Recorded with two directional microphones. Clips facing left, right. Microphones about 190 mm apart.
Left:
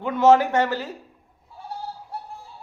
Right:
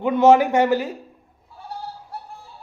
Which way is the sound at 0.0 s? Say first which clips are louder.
Right 2 dB; 15° right (ahead or behind).